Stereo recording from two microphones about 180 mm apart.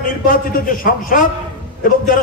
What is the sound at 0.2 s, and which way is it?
A man's voice, 50° left (ahead or behind).